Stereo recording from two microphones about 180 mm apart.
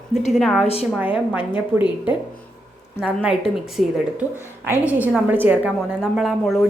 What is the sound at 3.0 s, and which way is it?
A woman's voice, 5° right (ahead or behind).